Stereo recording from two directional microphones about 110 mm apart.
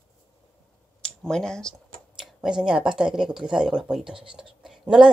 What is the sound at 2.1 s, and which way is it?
Speech, 5° right (ahead or behind).